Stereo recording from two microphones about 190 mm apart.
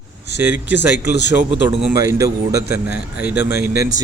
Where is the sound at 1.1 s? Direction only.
65° left (ahead or behind).